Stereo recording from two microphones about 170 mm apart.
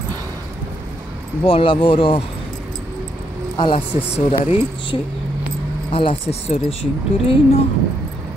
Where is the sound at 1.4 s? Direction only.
30° left (ahead or behind).